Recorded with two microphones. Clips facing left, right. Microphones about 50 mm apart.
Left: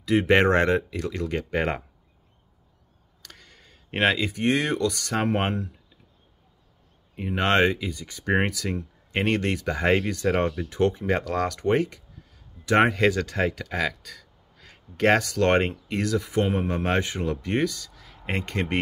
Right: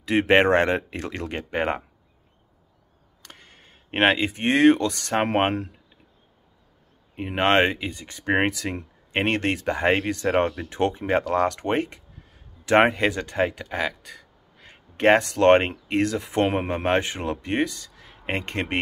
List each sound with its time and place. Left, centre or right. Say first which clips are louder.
0.0 s speech: right 1 dB; right
1.4 s speech: right 3 dB; right
3.2 s speech: right 1 dB; right
7.2 s speech: right 2 dB; right